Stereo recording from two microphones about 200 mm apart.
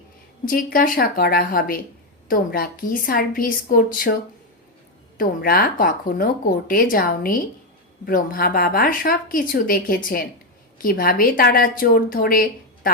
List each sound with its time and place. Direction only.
0.4 s a woman's voice: 45° left (ahead or behind)